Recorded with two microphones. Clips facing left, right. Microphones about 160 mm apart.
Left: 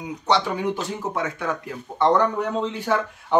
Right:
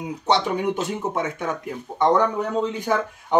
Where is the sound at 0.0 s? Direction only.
20° right (ahead or behind).